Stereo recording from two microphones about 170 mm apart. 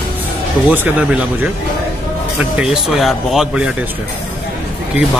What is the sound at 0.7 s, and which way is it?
Speech, 10° right (ahead or behind).